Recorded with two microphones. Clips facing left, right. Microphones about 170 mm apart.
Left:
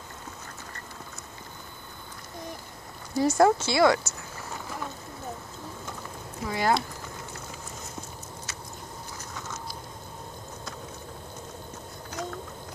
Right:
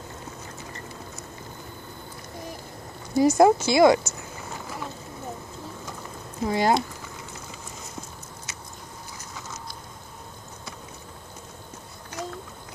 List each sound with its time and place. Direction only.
3.2 s speech: 15° right (ahead or behind)
6.4 s speech: 25° right (ahead or behind)
12.1 s a sound: centre (ahead or behind)